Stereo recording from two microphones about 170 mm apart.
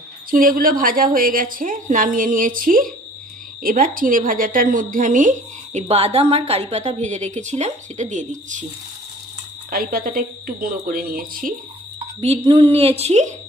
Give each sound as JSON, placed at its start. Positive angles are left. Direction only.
{"t": 0.3, "sound": "a woman's voice", "side_deg": -55}
{"t": 9.7, "sound": "a woman's voice", "side_deg": -65}
{"t": 12.2, "sound": "a woman's voice", "side_deg": -35}